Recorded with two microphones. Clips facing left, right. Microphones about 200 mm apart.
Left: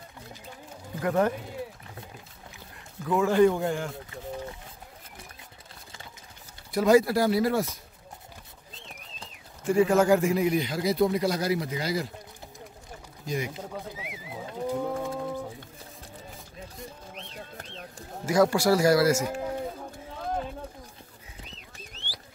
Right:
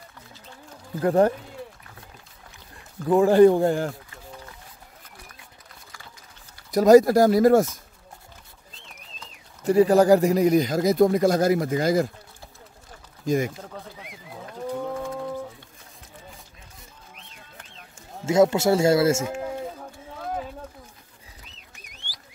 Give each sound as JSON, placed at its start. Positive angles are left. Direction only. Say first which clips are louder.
{"t": 1.0, "sound": "speech", "louder": "right 6 dB", "side_deg": -35}
{"t": 3.1, "sound": "speech", "louder": "right 6 dB", "side_deg": -35}
{"t": 6.7, "sound": "a man's voice", "louder": "right 7 dB", "side_deg": -40}
{"t": 9.7, "sound": "a man's voice", "louder": "right 5 dB", "side_deg": -35}
{"t": 13.2, "sound": "a man's voice", "louder": "right 8 dB", "side_deg": -45}
{"t": 13.7, "sound": "livestock", "louder": "left 2 dB", "side_deg": 5}
{"t": 17.3, "sound": "a sound", "louder": "left 7 dB", "side_deg": 35}
{"t": 18.2, "sound": "speech", "louder": "right 4 dB", "side_deg": -25}
{"t": 19.2, "sound": "livestock", "louder": "right 1 dB", "side_deg": -5}
{"t": 21.8, "sound": "a sound", "louder": "left 3 dB", "side_deg": -15}